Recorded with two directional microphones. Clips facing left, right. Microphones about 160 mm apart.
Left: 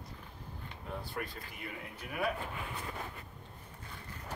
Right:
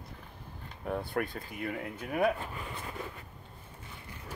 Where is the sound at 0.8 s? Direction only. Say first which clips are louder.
Right 8 dB; 55° right (ahead or behind).